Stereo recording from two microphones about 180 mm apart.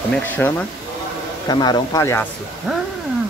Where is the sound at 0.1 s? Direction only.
10° left (ahead or behind).